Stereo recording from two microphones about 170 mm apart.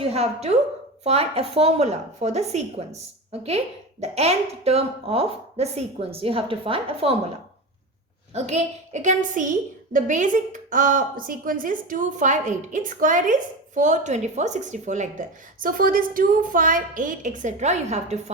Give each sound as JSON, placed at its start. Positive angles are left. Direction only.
{"t": 0.0, "sound": "a woman's voice", "side_deg": -35}
{"t": 8.3, "sound": "a woman's voice", "side_deg": -40}